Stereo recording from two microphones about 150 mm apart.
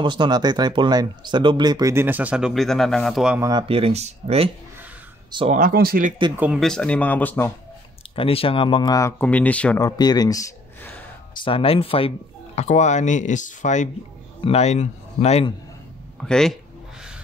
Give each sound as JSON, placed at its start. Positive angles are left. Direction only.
{"t": 0.0, "sound": "speech", "side_deg": -30}
{"t": 3.3, "sound": "speech", "side_deg": -25}
{"t": 3.6, "sound": "speech", "side_deg": -40}
{"t": 5.5, "sound": "speech", "side_deg": -70}
{"t": 6.3, "sound": "speech", "side_deg": -10}
{"t": 6.6, "sound": "speech", "side_deg": 5}
{"t": 8.2, "sound": "speech", "side_deg": 40}
{"t": 9.2, "sound": "speech", "side_deg": 10}
{"t": 9.8, "sound": "a man's voice", "side_deg": 25}
{"t": 11.4, "sound": "speech", "side_deg": 40}
{"t": 12.5, "sound": "speech", "side_deg": 50}
{"t": 16.2, "sound": "speech", "side_deg": 5}